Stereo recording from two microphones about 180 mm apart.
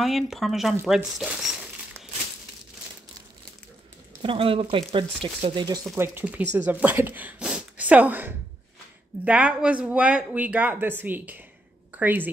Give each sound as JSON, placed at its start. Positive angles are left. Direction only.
{"t": 0.0, "sound": "speech", "side_deg": 0}
{"t": 4.2, "sound": "speech", "side_deg": -30}
{"t": 5.9, "sound": "speech", "side_deg": -10}